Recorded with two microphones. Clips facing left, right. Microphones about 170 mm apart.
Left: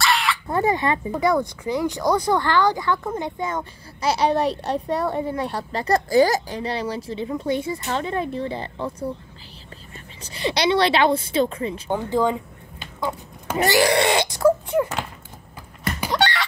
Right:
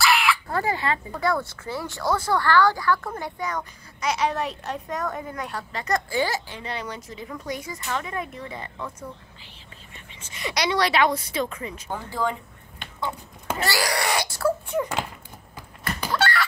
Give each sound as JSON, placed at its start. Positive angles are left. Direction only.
{"t": 0.0, "sound": "a sound", "side_deg": 0}
{"t": 0.5, "sound": "a sound", "side_deg": 20}
{"t": 1.1, "sound": "a child's voice", "side_deg": 20}
{"t": 10.2, "sound": "a woman's voice", "side_deg": 30}
{"t": 13.6, "sound": "speech", "side_deg": 20}
{"t": 15.8, "sound": "door", "side_deg": 20}